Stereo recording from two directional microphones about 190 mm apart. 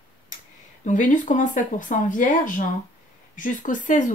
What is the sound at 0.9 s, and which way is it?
Speech, 40° left (ahead or behind).